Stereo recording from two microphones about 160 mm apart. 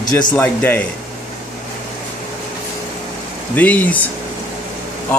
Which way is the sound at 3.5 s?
10° left (ahead or behind).